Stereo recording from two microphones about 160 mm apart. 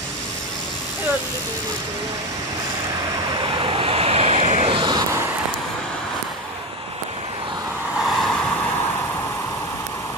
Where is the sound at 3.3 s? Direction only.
30° right (ahead or behind).